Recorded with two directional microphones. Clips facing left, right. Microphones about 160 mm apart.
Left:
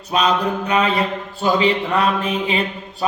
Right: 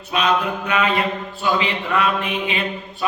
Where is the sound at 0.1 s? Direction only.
35° left (ahead or behind).